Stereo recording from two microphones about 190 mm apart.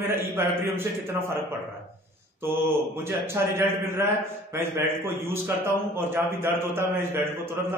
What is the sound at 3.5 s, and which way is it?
A man's voice, 15° right (ahead or behind).